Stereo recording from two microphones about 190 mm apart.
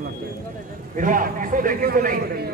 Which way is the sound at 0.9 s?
45° right (ahead or behind).